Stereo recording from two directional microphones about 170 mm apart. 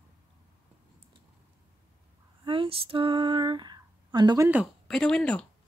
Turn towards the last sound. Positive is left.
turn(degrees=5)  # may be behind; listen again after turning